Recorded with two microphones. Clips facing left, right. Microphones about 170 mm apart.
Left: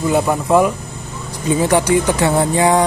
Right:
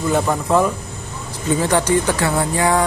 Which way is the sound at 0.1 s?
10° left (ahead or behind).